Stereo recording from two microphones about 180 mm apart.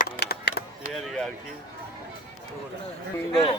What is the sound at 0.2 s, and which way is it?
Chop, 65° left (ahead or behind).